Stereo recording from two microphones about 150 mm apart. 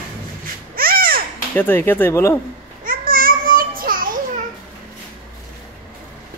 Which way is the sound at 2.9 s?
75° right (ahead or behind).